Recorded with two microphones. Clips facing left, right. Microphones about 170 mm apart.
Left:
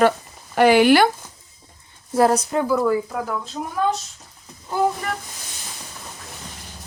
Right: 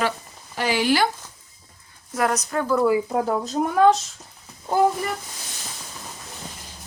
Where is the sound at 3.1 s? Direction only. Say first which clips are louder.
Right 4 dB; 30° right (ahead or behind).